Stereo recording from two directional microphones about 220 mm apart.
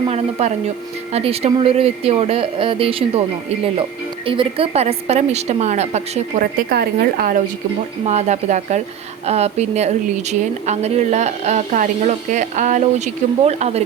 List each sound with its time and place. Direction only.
0.1 s speech: 30° right (ahead or behind)
6.4 s speech: 45° right (ahead or behind)
8.0 s speech: 30° right (ahead or behind)